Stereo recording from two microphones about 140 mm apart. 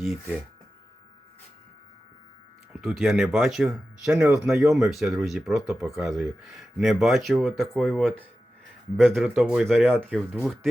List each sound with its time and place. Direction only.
0.0 s speech: centre (ahead or behind)
2.7 s speech: centre (ahead or behind)
9.8 s speech: 15° right (ahead or behind)
10.1 s speech: 5° right (ahead or behind)